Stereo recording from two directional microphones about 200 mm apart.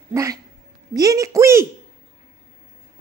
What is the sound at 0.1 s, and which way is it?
Speech, 15° right (ahead or behind).